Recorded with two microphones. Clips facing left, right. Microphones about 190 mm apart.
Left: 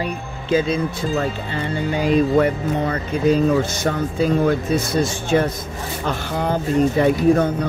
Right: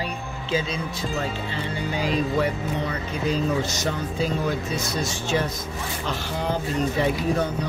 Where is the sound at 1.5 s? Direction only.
55° left (ahead or behind).